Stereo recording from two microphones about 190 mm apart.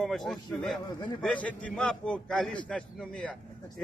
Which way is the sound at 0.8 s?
20° left (ahead or behind).